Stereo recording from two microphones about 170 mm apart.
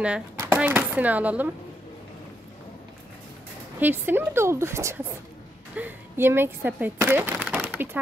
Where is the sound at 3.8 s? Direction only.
10° right (ahead or behind).